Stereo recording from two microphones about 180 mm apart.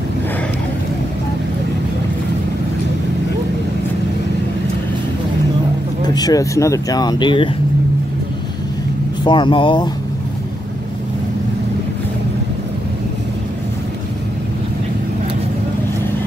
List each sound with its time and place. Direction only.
6.0 s speech: 20° left (ahead or behind)
9.2 s speech: 25° left (ahead or behind)